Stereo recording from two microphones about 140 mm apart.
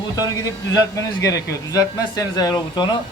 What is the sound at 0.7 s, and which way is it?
Speech, 25° left (ahead or behind).